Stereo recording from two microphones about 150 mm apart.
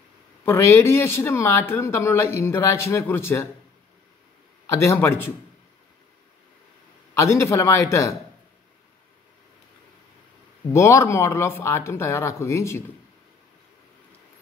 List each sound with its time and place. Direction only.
0.5 s speech: 20° left (ahead or behind)
4.6 s speech: 20° left (ahead or behind)
7.2 s a man's voice: 20° left (ahead or behind)
10.7 s speech: 20° left (ahead or behind)